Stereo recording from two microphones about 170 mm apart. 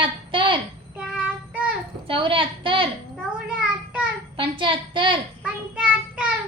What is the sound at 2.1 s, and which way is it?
Speech, 30° right (ahead or behind).